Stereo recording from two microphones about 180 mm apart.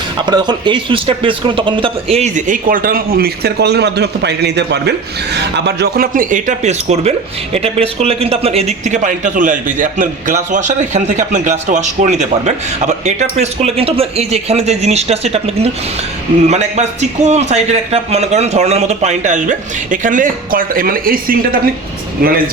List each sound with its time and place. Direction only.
0.3 s a man's voice: 25° right (ahead or behind); by 21.3 s 50° right (ahead or behind)